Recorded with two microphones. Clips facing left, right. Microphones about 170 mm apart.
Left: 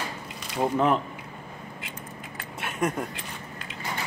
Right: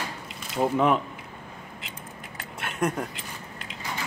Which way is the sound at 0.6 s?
Centre (ahead or behind).